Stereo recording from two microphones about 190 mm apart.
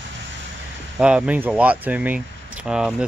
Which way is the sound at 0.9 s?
5° right (ahead or behind).